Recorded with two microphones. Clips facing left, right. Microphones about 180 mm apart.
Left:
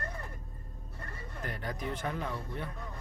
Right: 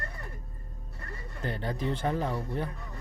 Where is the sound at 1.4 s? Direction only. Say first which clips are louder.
Right 6 dB; 30° right (ahead or behind).